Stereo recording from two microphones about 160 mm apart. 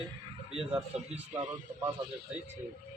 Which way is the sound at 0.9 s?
45° right (ahead or behind).